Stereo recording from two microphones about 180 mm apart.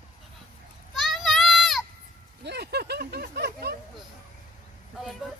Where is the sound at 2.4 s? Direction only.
65° right (ahead or behind).